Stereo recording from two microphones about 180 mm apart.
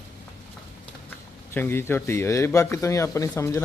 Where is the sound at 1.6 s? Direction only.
15° left (ahead or behind).